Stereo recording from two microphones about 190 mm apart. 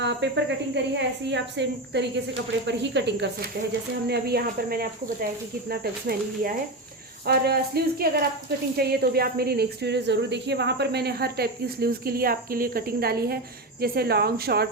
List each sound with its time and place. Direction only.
0.0 s a woman's voice: 70° right (ahead or behind)